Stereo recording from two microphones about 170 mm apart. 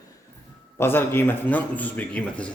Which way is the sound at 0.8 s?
15° left (ahead or behind).